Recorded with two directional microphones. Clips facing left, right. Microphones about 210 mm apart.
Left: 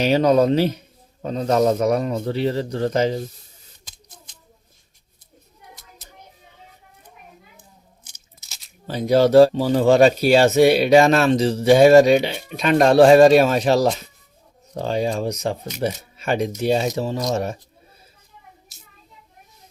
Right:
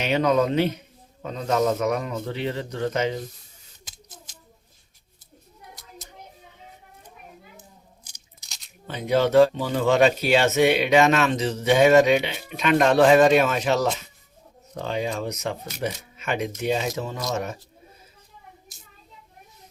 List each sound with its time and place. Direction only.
0.0 s speech: 35° left (ahead or behind)
3.8 s scissors: 5° right (ahead or behind)
8.4 s tearing: centre (ahead or behind)
8.9 s speech: 35° left (ahead or behind)